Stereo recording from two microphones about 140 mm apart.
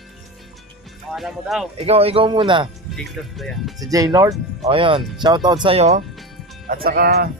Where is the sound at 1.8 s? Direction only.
45° right (ahead or behind).